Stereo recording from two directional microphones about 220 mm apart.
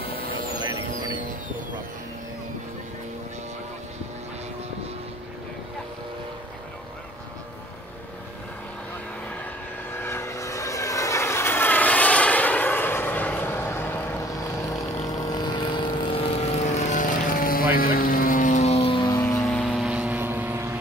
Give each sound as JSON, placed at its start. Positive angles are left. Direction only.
{"t": 10.0, "sound": "vehicle", "side_deg": 10}
{"t": 16.3, "sound": "vehicle", "side_deg": 35}
{"t": 19.4, "sound": "vehicle", "side_deg": 0}